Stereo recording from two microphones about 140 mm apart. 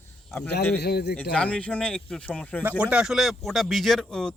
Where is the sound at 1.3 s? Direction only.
10° left (ahead or behind).